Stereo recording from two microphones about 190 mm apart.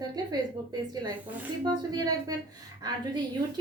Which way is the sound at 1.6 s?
20° right (ahead or behind).